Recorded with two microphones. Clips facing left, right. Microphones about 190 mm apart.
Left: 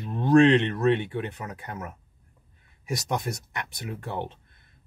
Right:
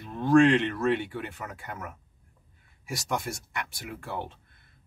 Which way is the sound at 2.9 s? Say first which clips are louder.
Left 3 dB; 20° left (ahead or behind).